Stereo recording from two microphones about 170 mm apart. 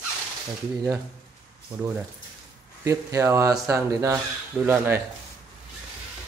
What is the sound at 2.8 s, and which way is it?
Speech, 15° right (ahead or behind).